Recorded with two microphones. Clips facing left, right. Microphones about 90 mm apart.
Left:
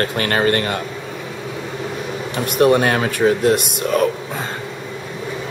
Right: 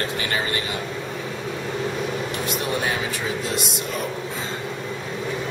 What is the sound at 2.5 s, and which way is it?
Speech, 60° left (ahead or behind).